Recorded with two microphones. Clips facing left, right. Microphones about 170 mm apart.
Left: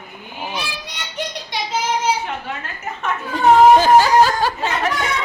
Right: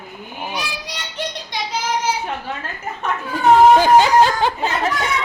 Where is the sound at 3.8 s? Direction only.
20° right (ahead or behind).